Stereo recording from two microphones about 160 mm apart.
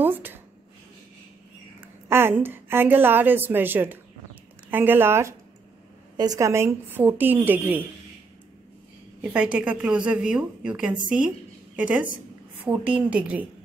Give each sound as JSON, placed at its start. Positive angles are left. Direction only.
{"t": 0.0, "sound": "speech", "side_deg": -10}
{"t": 1.8, "sound": "a woman's voice", "side_deg": -15}
{"t": 9.2, "sound": "a woman's voice", "side_deg": -10}